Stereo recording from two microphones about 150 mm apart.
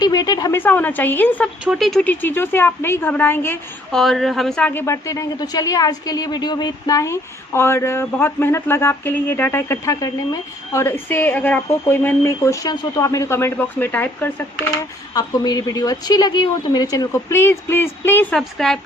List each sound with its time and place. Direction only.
0.0 s speech: 25° left (ahead or behind)
0.6 s speech: 10° left (ahead or behind)
1.6 s speech: centre (ahead or behind); by 3.6 s 15° left (ahead or behind)
3.9 s speech: centre (ahead or behind)
15.1 s speech: 25° left (ahead or behind)
18.3 s a woman's voice: 5° left (ahead or behind)